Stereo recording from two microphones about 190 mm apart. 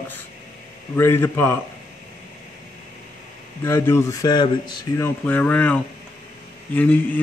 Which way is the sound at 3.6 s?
15° left (ahead or behind).